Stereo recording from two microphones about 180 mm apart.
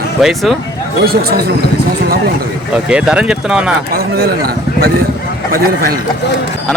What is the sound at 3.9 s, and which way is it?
A man's voice, 60° right (ahead or behind).